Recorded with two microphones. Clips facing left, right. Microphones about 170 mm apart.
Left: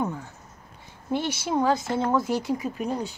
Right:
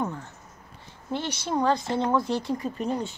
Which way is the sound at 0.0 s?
10° left (ahead or behind).